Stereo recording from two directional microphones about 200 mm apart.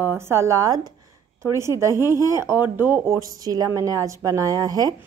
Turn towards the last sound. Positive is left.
turn(degrees=-20)  # may be behind; listen again after turning